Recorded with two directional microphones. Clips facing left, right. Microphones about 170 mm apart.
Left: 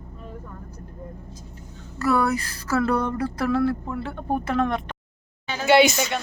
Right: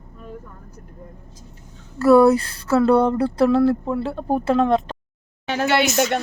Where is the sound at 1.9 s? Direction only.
30° right (ahead or behind).